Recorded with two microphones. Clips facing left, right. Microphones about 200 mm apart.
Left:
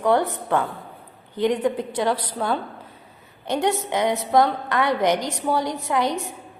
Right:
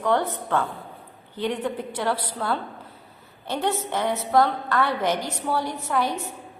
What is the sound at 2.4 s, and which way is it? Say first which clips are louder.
A woman's voice: left 2 dB; 15° left (ahead or behind).